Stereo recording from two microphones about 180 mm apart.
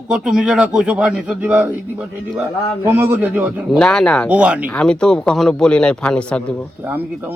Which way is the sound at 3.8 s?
5° left (ahead or behind).